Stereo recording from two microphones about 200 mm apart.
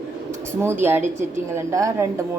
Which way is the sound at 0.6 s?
10° right (ahead or behind).